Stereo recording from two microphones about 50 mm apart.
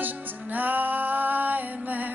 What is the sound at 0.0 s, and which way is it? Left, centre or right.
Music, right.